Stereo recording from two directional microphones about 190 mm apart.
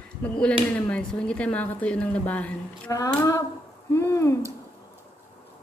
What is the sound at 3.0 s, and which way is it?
A woman's voice, 20° left (ahead or behind).